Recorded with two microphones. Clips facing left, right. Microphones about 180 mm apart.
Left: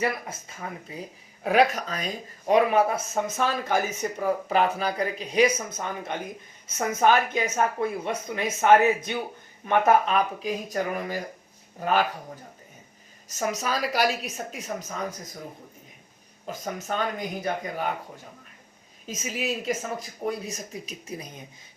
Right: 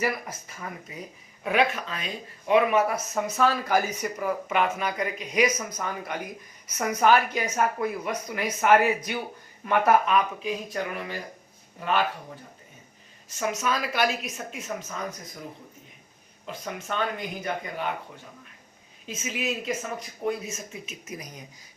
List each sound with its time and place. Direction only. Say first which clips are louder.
0.0 s speech: left 1 dB; 25° left (ahead or behind)
10.1 s speech: even; 35° left (ahead or behind)
13.2 s speech: right 1 dB; 40° left (ahead or behind)
16.5 s speech: left 2 dB; 40° left (ahead or behind)
19.0 s speech: left 1 dB; 40° left (ahead or behind)